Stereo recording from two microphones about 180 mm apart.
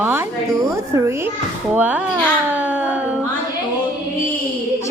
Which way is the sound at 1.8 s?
10° right (ahead or behind).